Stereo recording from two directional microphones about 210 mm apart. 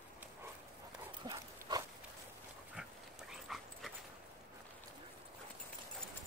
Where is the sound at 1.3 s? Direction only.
20° right (ahead or behind).